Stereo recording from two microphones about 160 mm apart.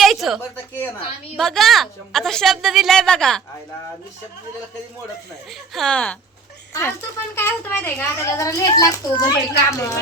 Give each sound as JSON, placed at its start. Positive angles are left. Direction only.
{"t": 0.0, "sound": "a sound", "side_deg": 0}
{"t": 0.5, "sound": "a woman's voice", "side_deg": 15}
{"t": 1.4, "sound": "a woman's voice", "side_deg": 0}
{"t": 5.5, "sound": "a woman's voice", "side_deg": 0}
{"t": 7.3, "sound": "a child's voice", "side_deg": 15}